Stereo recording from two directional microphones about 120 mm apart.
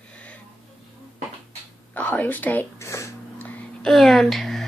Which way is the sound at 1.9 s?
10° left (ahead or behind).